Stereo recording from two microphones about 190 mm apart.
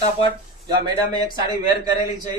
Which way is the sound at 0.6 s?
20° right (ahead or behind).